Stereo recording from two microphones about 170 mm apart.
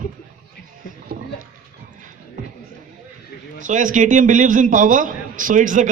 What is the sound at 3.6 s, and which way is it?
A man's voice, 50° right (ahead or behind).